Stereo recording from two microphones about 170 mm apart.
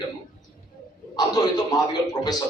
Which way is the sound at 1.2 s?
25° left (ahead or behind).